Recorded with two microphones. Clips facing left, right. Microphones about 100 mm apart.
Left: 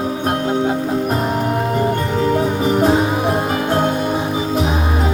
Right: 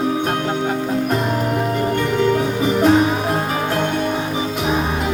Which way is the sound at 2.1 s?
30° left (ahead or behind).